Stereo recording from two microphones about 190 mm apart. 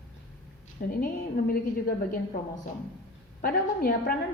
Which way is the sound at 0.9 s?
50° left (ahead or behind).